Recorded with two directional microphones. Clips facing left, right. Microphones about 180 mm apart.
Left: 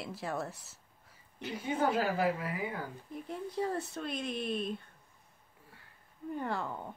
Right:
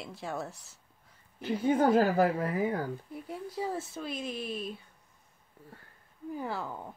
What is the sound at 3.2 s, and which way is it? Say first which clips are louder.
Speech: left 1 dB; 5° right (ahead or behind).